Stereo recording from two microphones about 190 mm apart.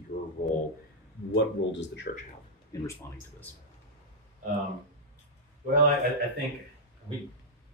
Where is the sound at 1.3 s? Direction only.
65° left (ahead or behind).